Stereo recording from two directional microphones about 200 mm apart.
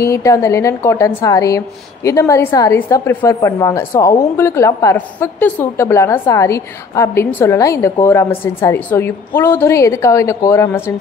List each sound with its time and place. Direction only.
0.0 s a woman's voice: 15° left (ahead or behind)